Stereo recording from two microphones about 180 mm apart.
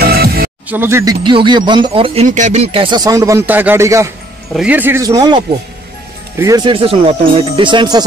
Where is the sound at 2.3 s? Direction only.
40° right (ahead or behind).